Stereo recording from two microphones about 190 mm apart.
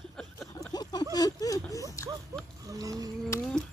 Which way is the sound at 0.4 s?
20° left (ahead or behind).